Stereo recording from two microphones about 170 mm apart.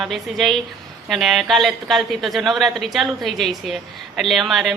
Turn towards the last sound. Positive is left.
turn(degrees=0)  # may be behind; listen again after turning